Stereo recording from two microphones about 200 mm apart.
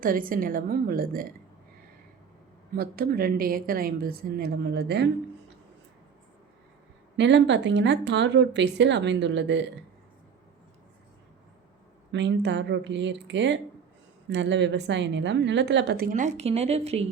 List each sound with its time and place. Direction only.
0.0 s a woman's voice: 45° right (ahead or behind)
2.7 s a woman's voice: 50° right (ahead or behind)
7.2 s a woman's voice: 60° right (ahead or behind)
12.1 s a woman's voice: 60° right (ahead or behind); by 17.1 s 30° right (ahead or behind)